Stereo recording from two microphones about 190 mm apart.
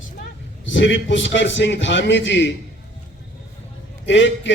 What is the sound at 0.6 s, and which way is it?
A man's voice, 75° left (ahead or behind).